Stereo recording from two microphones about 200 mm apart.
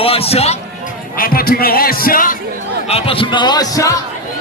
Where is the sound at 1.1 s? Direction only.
45° left (ahead or behind).